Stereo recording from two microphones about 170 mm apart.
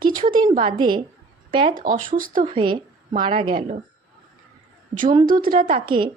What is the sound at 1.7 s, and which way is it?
Speech, 55° right (ahead or behind).